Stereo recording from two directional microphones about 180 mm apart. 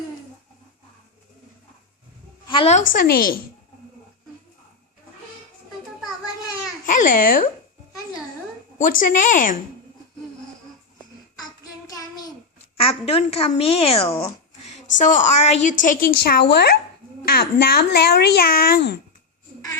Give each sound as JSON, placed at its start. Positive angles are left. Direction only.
{"t": 2.5, "sound": "a woman's voice", "side_deg": 35}
{"t": 2.9, "sound": "speech", "side_deg": 50}
{"t": 6.8, "sound": "a child's voice", "side_deg": 50}
{"t": 8.8, "sound": "speech", "side_deg": 50}
{"t": 11.9, "sound": "child singing", "side_deg": 20}
{"t": 12.7, "sound": "a woman's voice", "side_deg": 35}
{"t": 15.8, "sound": "a child's voice", "side_deg": 50}